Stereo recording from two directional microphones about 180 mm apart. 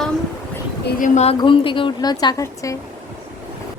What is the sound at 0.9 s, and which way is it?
Speech, 45° left (ahead or behind).